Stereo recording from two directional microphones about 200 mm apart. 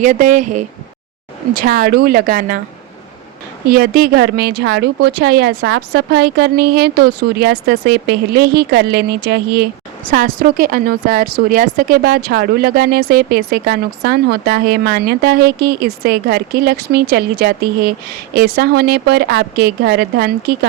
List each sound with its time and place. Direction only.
0.0 s speech: 40° right (ahead or behind)
1.5 s speech: 50° right (ahead or behind)
3.7 s speech: 50° right (ahead or behind)